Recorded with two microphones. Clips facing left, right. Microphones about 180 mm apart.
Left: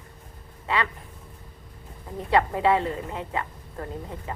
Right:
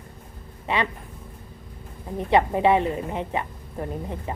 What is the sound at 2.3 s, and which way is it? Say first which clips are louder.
Speech: right 2 dB; 20° right (ahead or behind).